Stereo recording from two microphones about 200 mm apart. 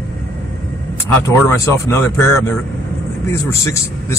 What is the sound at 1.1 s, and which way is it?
Speech, 10° left (ahead or behind).